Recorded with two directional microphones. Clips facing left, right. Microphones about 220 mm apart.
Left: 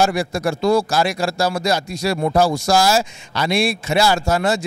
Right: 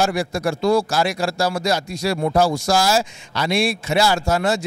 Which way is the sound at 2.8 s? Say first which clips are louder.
Left 2 dB; 10° left (ahead or behind).